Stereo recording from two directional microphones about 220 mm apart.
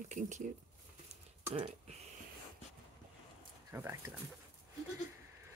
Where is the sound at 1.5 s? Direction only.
30° right (ahead or behind).